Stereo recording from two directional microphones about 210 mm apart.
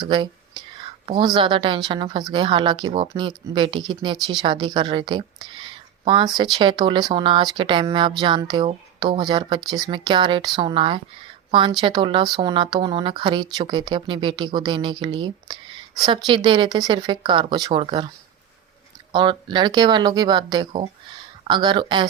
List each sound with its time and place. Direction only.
0.0 s speech: 20° right (ahead or behind)
19.1 s speech: 20° right (ahead or behind)